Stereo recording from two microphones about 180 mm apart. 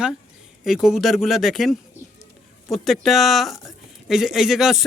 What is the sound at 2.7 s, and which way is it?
Speech, centre (ahead or behind).